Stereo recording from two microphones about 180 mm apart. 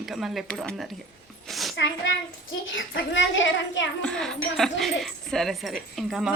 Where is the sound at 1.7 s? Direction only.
90° left.